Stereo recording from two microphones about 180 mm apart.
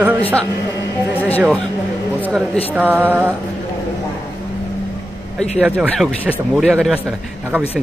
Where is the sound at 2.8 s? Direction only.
10° right (ahead or behind).